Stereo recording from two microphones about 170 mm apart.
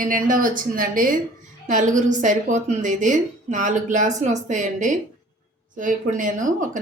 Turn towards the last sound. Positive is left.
turn(degrees=-50)  # may be behind; listen again after turning